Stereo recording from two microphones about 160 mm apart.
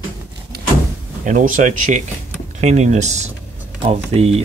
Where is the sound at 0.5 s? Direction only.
90° right.